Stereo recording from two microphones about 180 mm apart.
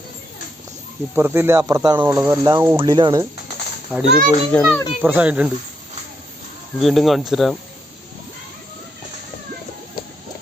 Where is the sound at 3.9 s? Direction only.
10° right (ahead or behind).